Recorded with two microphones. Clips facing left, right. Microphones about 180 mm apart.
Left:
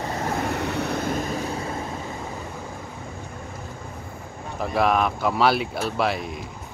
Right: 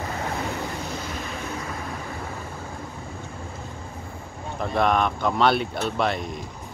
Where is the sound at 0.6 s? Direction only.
70° left (ahead or behind).